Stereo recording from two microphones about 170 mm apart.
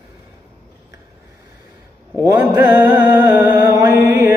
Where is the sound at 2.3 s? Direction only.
10° right (ahead or behind).